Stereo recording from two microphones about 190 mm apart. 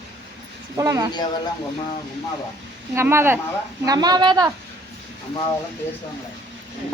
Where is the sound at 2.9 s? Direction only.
15° right (ahead or behind).